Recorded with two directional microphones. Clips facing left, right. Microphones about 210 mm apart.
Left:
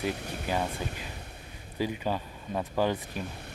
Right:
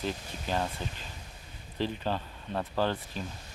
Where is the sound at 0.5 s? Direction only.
10° left (ahead or behind).